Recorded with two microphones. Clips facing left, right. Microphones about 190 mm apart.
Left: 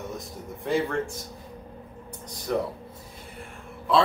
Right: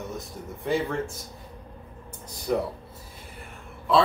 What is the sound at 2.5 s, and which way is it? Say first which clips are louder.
Speech: right 1 dB; 5° right (ahead or behind).